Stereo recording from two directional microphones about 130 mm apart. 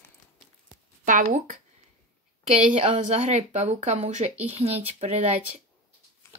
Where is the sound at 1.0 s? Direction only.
80° right.